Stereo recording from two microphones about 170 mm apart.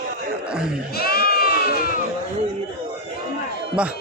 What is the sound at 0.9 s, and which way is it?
Sheep, 65° left (ahead or behind).